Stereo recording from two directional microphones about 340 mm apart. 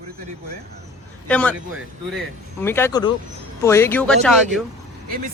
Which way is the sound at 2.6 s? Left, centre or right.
Centre.